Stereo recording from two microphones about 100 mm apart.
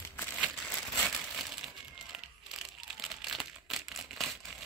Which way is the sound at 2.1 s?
5° right (ahead or behind).